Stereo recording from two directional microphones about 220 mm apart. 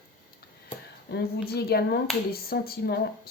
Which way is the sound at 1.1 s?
45° left (ahead or behind).